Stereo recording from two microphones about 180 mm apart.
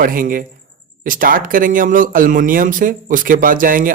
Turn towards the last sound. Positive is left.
turn(degrees=-50)  # may be behind; listen again after turning